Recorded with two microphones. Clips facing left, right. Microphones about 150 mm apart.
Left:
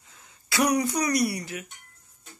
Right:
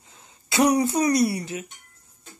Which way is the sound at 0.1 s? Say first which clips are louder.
Right 3 dB; 25° right (ahead or behind).